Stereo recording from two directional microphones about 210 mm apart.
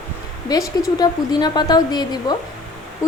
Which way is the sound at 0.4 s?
20° left (ahead or behind).